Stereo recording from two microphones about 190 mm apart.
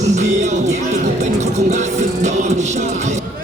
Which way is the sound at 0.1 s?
40° right (ahead or behind).